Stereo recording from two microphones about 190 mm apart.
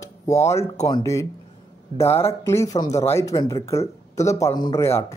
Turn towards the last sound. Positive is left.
turn(degrees=15)  # may be behind; listen again after turning